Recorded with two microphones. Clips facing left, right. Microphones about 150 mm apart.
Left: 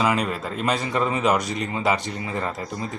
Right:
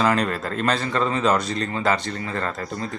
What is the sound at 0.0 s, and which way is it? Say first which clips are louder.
Speech: right 2 dB; 10° left (ahead or behind).